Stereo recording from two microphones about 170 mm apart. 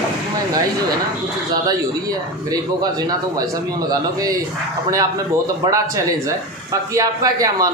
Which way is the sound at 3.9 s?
20° right (ahead or behind).